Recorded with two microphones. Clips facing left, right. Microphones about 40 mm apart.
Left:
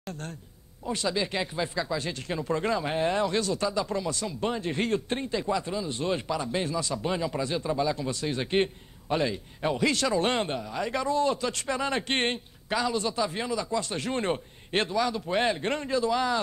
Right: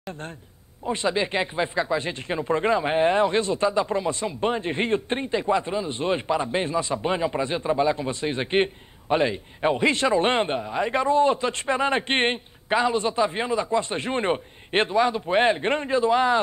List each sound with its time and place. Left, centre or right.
0.8 s speech: right